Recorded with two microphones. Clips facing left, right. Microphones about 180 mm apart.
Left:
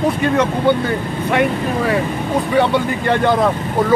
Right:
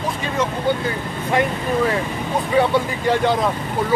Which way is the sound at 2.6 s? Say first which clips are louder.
Left 1 dB; 60° left (ahead or behind).